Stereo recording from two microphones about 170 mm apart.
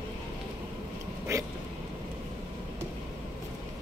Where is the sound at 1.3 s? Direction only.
20° right (ahead or behind).